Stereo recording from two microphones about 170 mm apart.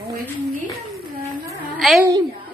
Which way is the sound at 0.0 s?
65° right (ahead or behind).